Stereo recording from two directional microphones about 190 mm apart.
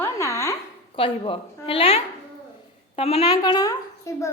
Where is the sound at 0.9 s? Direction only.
30° left (ahead or behind).